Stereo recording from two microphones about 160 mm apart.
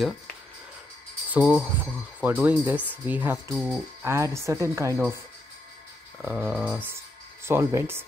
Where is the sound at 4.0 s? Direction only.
15° right (ahead or behind).